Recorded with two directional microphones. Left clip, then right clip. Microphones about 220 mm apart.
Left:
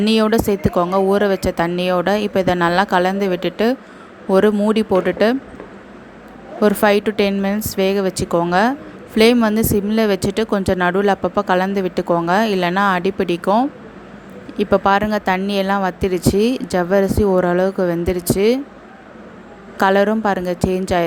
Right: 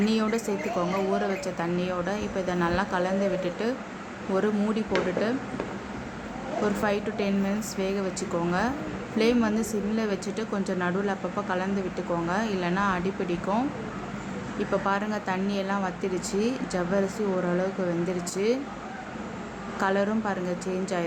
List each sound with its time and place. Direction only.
0.0 s speech: 40° left (ahead or behind)
6.6 s speech: 40° left (ahead or behind)
19.8 s speech: 40° left (ahead or behind)